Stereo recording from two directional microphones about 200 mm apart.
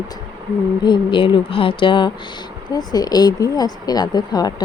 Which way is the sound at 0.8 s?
25° left (ahead or behind).